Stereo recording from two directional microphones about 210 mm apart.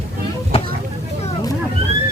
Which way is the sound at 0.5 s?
25° left (ahead or behind).